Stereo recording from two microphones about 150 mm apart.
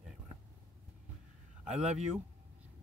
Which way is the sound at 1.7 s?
50° right (ahead or behind).